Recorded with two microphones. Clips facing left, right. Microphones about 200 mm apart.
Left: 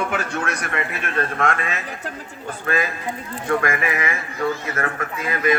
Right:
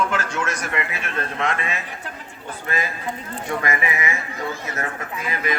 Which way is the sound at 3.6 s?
50° left (ahead or behind).